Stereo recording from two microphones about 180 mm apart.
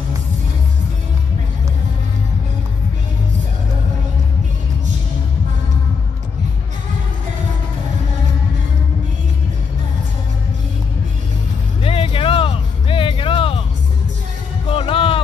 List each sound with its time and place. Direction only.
11.8 s music: 30° left (ahead or behind)
14.7 s music: 30° left (ahead or behind)